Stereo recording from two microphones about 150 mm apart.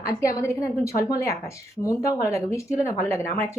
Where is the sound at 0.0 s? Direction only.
20° left (ahead or behind).